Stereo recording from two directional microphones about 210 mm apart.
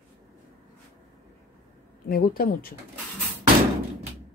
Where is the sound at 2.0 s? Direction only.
45° left (ahead or behind).